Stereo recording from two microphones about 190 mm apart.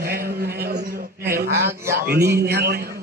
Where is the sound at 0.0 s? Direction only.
55° right (ahead or behind).